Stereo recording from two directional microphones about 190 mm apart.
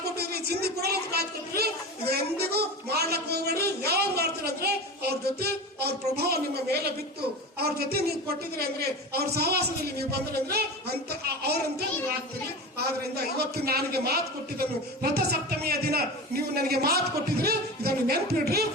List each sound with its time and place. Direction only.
0.0 s a woman's voice: 55° right (ahead or behind)
13.3 s a woman's voice: 55° right (ahead or behind)